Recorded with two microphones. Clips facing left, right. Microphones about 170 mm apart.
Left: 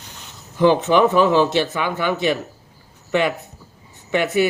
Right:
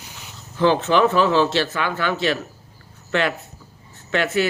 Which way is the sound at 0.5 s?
15° left (ahead or behind).